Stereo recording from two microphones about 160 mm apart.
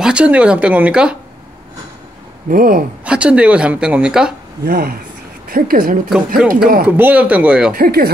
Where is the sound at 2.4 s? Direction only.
60° right (ahead or behind).